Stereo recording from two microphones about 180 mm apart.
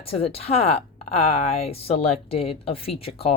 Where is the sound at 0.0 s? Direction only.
30° left (ahead or behind).